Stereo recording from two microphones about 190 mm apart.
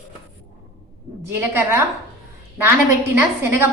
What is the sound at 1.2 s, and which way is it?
Speech, 10° right (ahead or behind).